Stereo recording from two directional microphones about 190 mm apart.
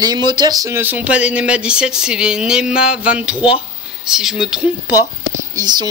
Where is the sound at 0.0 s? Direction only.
20° right (ahead or behind); by 4.6 s 5° right (ahead or behind).